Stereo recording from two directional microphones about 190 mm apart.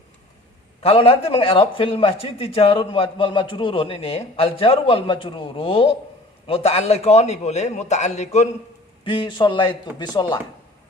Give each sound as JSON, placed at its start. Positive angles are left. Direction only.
{"t": 0.8, "sound": "a man's voice", "side_deg": 30}